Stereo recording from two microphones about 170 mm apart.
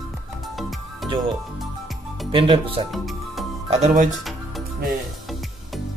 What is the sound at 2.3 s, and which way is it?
Speech, 30° right (ahead or behind).